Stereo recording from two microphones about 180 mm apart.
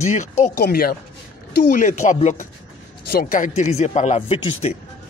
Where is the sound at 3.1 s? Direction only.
50° left (ahead or behind); by 4.7 s 30° left (ahead or behind).